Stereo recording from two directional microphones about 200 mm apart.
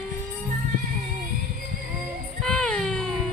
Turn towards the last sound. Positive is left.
turn(degrees=5)  # may be behind; listen again after turning